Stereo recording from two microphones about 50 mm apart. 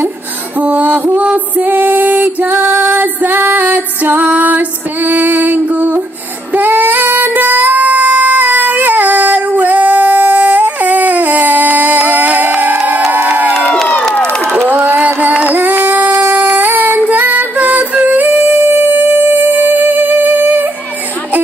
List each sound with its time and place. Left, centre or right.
0.6 s music: right
6.5 s singing: right
13.1 s crowd: right
14.7 s music: right
15.4 s a sound: right
16.5 s female singing: right
17.1 s singing: right